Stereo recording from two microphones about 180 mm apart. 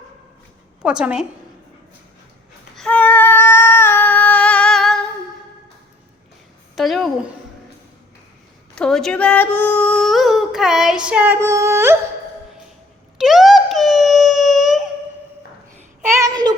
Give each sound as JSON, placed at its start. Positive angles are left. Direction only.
{"t": 0.9, "sound": "speech", "side_deg": -5}
{"t": 2.7, "sound": "child singing", "side_deg": 5}
{"t": 6.7, "sound": "a woman's voice", "side_deg": 0}
{"t": 8.7, "sound": "speech", "side_deg": 5}
{"t": 13.1, "sound": "a sound", "side_deg": 0}
{"t": 16.0, "sound": "a sound", "side_deg": -15}